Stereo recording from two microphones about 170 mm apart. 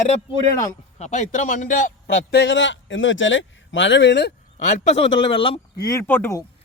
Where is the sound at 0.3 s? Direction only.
20° left (ahead or behind).